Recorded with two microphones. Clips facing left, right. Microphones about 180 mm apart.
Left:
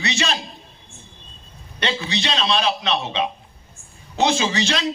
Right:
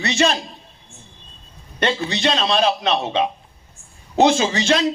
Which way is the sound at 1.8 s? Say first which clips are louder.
Right 4 dB; 50° right (ahead or behind).